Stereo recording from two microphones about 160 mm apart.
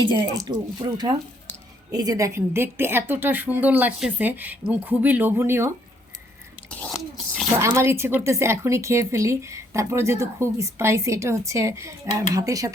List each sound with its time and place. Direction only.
0.1 s a woman's voice: 30° right (ahead or behind)
6.7 s drip: 5° left (ahead or behind)
7.6 s a woman's voice: 15° right (ahead or behind)